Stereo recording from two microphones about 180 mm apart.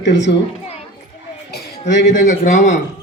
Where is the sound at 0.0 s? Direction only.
75° left (ahead or behind).